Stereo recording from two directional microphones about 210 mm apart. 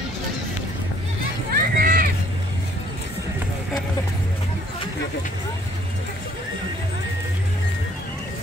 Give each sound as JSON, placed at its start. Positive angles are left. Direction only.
{"t": 1.5, "sound": "run", "side_deg": -45}